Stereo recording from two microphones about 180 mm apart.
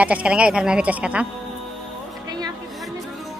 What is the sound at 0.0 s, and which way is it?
Speech, 5° right (ahead or behind).